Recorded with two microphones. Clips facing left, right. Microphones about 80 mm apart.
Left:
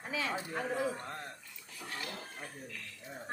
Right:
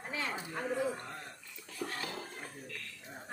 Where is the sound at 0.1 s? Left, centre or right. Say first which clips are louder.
Left 2 dB; left.